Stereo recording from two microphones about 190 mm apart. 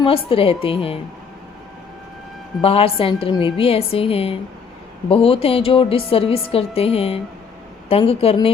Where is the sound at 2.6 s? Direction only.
30° left (ahead or behind).